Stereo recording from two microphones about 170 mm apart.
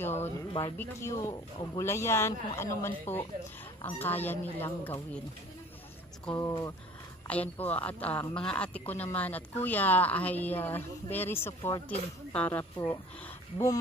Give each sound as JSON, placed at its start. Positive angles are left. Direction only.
{"t": 0.0, "sound": "speech", "side_deg": 15}
{"t": 6.2, "sound": "speech", "side_deg": 15}